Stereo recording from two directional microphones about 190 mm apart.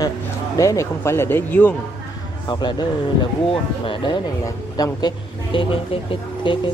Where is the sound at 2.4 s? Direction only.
25° left (ahead or behind).